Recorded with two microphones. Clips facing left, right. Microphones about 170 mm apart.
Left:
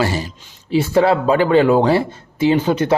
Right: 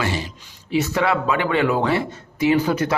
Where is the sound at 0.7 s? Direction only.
30° left (ahead or behind).